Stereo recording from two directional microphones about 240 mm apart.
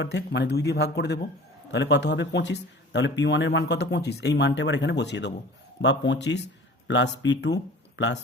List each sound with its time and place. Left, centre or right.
0.0 s speech: left